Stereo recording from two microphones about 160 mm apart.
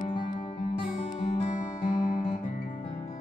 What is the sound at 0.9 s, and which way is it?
Music, 45° left (ahead or behind).